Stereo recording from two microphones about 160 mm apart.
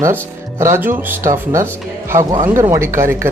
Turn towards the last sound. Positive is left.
turn(degrees=-15)  # may be behind; listen again after turning